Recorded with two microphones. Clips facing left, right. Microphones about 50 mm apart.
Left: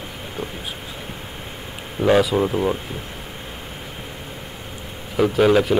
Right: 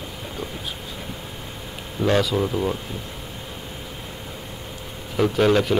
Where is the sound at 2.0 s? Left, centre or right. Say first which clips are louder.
Left 4 dB; centre.